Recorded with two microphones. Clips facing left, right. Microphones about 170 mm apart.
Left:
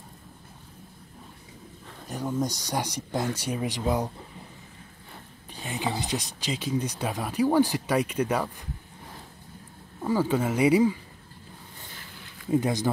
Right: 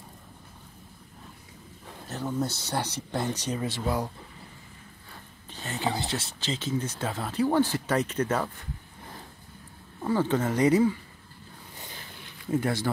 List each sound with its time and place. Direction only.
2.0 s speech: 10° left (ahead or behind)
5.5 s a sound: 10° left (ahead or behind)
5.9 s speech: 15° left (ahead or behind)
10.0 s speech: 10° left (ahead or behind)
12.4 s speech: 20° left (ahead or behind)